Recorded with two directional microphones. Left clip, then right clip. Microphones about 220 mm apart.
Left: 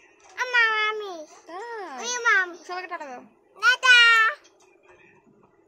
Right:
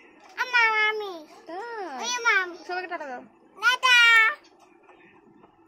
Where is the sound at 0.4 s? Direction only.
5° right (ahead or behind).